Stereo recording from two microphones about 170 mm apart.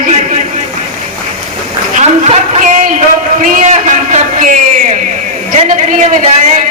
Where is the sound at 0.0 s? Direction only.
45° right (ahead or behind).